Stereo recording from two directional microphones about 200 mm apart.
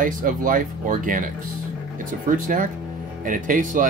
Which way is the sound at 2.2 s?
45° right (ahead or behind).